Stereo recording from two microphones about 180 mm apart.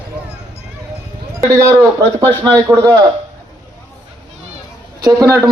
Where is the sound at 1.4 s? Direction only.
15° right (ahead or behind).